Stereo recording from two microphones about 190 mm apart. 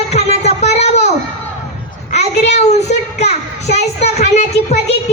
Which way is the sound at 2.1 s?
35° left (ahead or behind).